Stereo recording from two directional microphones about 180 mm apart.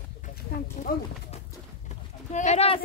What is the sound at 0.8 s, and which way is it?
Pigeon, 40° left (ahead or behind).